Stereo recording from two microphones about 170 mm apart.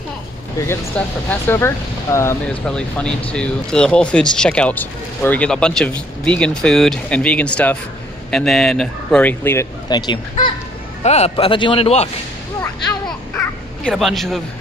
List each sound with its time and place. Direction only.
0.7 s a man's voice: 10° left (ahead or behind)
9.8 s speech: 25° left (ahead or behind)
11.0 s speech: 40° left (ahead or behind)
13.8 s a man's voice: centre (ahead or behind)